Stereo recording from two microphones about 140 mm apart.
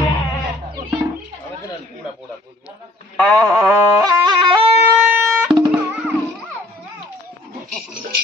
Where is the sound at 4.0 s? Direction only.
35° right (ahead or behind).